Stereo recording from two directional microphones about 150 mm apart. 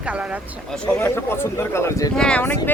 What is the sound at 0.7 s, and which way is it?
Speech, 10° left (ahead or behind).